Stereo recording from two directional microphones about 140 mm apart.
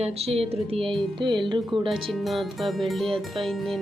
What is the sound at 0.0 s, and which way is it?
Speech, 45° right (ahead or behind).